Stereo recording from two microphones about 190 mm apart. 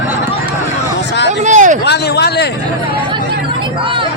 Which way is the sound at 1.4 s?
40° right (ahead or behind).